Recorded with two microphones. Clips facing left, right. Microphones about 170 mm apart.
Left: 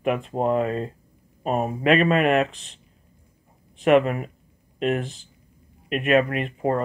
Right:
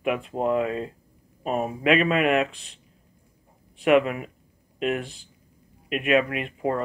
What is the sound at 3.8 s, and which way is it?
Speech, 40° left (ahead or behind).